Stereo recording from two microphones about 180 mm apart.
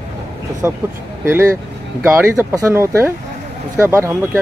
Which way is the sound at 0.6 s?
10° right (ahead or behind).